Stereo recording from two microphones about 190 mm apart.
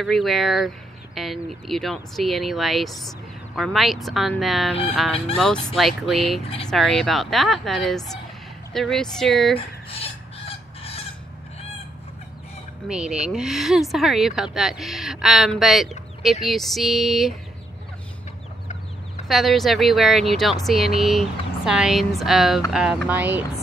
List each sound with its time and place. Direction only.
0.0 s speech: centre (ahead or behind)
9.6 s chicken: 30° left (ahead or behind)
12.8 s speech: 5° right (ahead or behind)
19.2 s speech: centre (ahead or behind)